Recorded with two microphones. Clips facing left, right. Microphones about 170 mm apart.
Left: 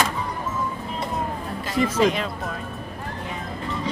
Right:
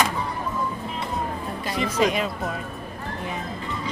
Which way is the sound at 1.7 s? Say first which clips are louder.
Left 3 dB; 15° right (ahead or behind).